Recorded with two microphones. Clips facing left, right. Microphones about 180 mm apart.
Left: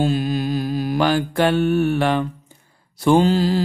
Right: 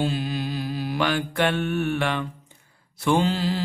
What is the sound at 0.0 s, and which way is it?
Mantra, 45° left (ahead or behind).